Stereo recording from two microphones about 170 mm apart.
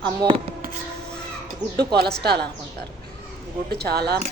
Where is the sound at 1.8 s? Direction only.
70° right (ahead or behind).